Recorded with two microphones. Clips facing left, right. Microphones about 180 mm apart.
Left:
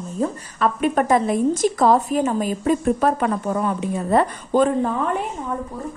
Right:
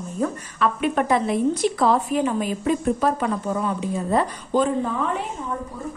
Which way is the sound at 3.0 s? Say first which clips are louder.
Left 2 dB; 60° left (ahead or behind).